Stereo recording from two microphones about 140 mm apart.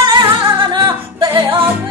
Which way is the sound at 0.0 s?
35° right (ahead or behind).